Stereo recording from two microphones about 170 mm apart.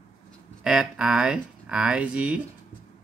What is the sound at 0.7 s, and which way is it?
Speech, 5° right (ahead or behind).